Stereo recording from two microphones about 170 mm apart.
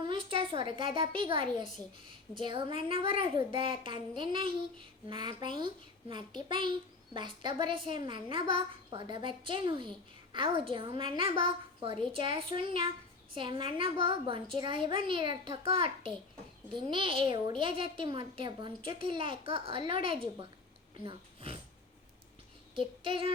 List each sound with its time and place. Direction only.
0.0 s a woman's voice: 30° right (ahead or behind)
22.7 s child singing: 30° right (ahead or behind)